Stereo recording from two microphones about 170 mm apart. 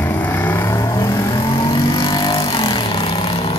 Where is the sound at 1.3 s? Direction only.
30° left (ahead or behind).